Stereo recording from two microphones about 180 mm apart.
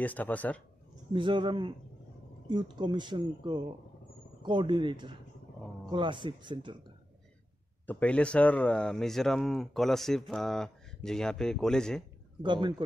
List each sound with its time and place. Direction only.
0.0 s a man's voice: 10° left (ahead or behind)
1.1 s speech: 25° right (ahead or behind)
7.8 s speech: 10° left (ahead or behind)
12.4 s speech: 25° right (ahead or behind)